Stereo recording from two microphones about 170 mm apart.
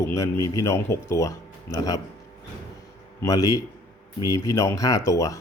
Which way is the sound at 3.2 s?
20° left (ahead or behind).